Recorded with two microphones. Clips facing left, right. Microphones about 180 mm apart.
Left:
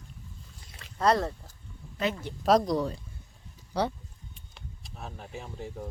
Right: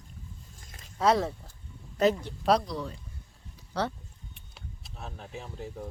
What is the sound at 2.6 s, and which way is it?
Speech, 45° left (ahead or behind).